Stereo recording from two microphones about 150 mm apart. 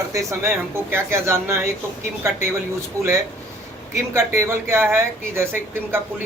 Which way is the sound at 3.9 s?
15° right (ahead or behind).